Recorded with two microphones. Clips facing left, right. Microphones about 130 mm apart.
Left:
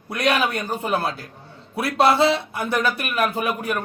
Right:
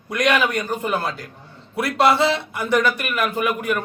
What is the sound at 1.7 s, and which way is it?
Speech, 25° left (ahead or behind).